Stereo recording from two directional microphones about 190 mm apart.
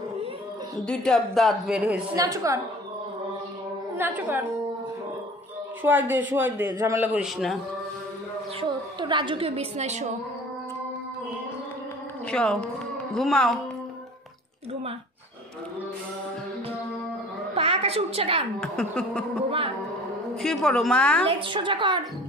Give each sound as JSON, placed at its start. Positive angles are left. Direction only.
{"t": 0.8, "sound": "speech", "side_deg": 5}
{"t": 2.1, "sound": "a man's voice", "side_deg": -20}
{"t": 4.0, "sound": "a man's voice", "side_deg": -10}
{"t": 5.8, "sound": "a man's voice", "side_deg": -10}
{"t": 8.5, "sound": "a woman's voice", "side_deg": -25}
{"t": 12.3, "sound": "speech", "side_deg": 5}
{"t": 17.6, "sound": "a woman's voice", "side_deg": -30}
{"t": 18.6, "sound": "speech", "side_deg": 5}
{"t": 20.4, "sound": "speech", "side_deg": 0}
{"t": 21.3, "sound": "a woman's voice", "side_deg": -25}